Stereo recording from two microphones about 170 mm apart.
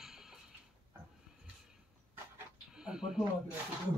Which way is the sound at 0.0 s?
Centre (ahead or behind).